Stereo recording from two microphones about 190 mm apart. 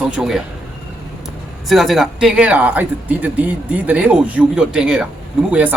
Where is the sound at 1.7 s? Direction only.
Centre (ahead or behind).